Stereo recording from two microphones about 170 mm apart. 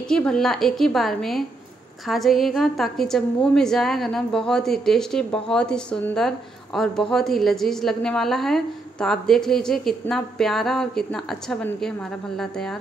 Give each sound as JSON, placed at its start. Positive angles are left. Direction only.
{"t": 0.1, "sound": "a woman's voice", "side_deg": 5}